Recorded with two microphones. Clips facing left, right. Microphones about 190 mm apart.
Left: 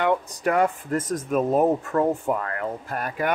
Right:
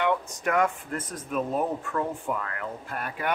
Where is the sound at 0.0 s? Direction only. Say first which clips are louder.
Left 4 dB; 35° left (ahead or behind).